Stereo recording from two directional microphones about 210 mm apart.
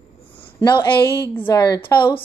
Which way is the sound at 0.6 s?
20° left (ahead or behind).